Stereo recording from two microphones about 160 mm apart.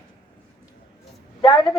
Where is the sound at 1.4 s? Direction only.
30° left (ahead or behind).